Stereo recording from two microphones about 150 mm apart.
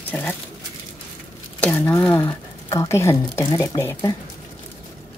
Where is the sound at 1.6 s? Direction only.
10° left (ahead or behind).